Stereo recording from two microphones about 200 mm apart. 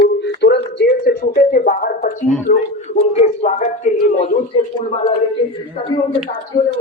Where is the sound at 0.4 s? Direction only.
60° left (ahead or behind); by 3.7 s 35° left (ahead or behind).